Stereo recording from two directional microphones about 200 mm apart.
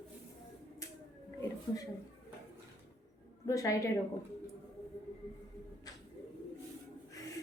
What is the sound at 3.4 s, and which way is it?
Speech, 15° left (ahead or behind).